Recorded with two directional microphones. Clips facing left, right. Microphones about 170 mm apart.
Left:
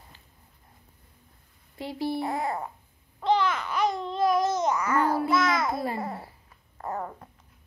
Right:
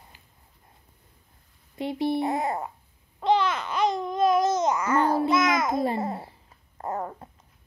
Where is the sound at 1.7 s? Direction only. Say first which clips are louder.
Right 4 dB; 20° right (ahead or behind).